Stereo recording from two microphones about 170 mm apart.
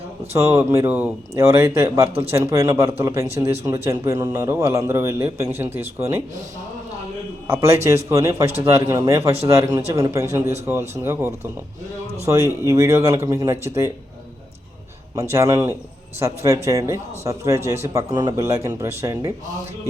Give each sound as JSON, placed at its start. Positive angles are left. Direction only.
{"t": 0.3, "sound": "a man's voice", "side_deg": -15}
{"t": 2.0, "sound": "a man's voice", "side_deg": -35}
{"t": 2.3, "sound": "a man's voice", "side_deg": -15}
{"t": 7.4, "sound": "a man's voice", "side_deg": -15}
{"t": 15.1, "sound": "a man's voice", "side_deg": -15}